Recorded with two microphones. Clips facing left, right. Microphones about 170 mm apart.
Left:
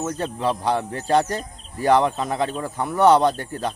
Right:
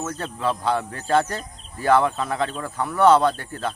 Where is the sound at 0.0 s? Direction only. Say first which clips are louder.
Left 2 dB; 15° left (ahead or behind).